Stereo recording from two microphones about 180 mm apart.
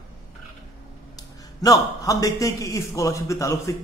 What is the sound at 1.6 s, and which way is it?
A man's voice, 20° left (ahead or behind).